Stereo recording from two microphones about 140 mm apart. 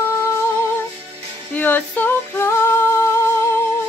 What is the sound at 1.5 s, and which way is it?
Singing, 15° left (ahead or behind).